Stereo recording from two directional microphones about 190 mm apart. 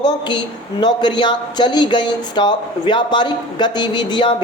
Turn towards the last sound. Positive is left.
turn(degrees=25)  # may be behind; listen again after turning